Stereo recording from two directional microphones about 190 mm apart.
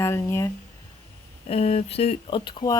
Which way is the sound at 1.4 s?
35° left (ahead or behind).